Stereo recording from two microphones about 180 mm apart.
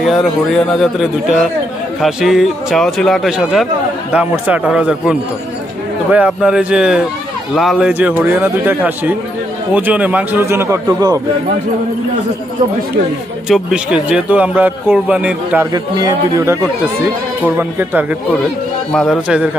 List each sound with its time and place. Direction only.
0.0 s a man's voice: centre (ahead or behind)
6.1 s a man's voice: 5° right (ahead or behind)
13.5 s a man's voice: 5° right (ahead or behind)
15.7 s a man's voice: 20° right (ahead or behind)
18.9 s speech: 5° left (ahead or behind)